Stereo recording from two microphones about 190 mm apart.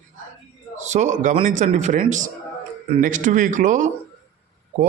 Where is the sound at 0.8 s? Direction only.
40° right (ahead or behind).